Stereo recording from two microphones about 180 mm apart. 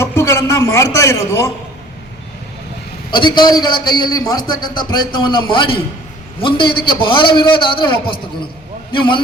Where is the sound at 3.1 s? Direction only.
25° left (ahead or behind).